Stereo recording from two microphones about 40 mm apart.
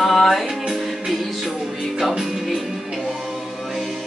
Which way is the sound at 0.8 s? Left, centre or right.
Centre.